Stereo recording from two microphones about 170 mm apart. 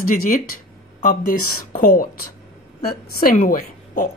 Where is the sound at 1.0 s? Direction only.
55° left (ahead or behind).